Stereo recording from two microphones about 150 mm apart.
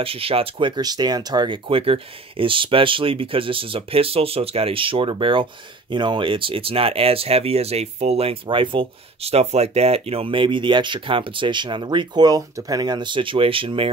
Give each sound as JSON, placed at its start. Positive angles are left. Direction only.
{"t": 0.0, "sound": "speech", "side_deg": -40}